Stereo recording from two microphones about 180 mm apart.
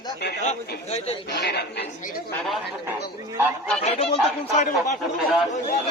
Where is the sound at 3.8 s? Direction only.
35° left (ahead or behind).